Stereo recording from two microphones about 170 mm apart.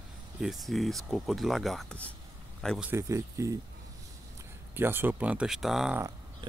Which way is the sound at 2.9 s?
15° right (ahead or behind).